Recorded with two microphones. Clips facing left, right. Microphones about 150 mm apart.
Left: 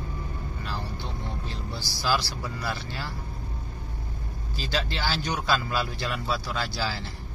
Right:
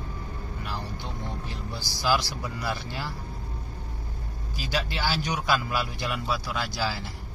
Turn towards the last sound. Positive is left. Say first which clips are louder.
# even
turn(degrees=-15)  # may be behind; listen again after turning